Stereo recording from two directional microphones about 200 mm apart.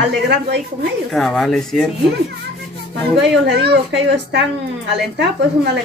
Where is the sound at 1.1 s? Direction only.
Centre (ahead or behind).